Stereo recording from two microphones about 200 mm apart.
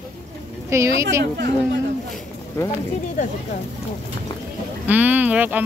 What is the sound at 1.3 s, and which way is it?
Speech, 60° right (ahead or behind).